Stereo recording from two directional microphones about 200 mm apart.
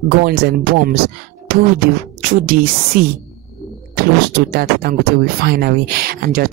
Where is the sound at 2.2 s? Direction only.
45° right (ahead or behind).